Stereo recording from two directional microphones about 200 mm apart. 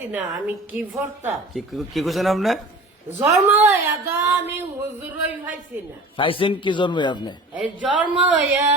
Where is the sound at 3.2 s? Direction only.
10° right (ahead or behind).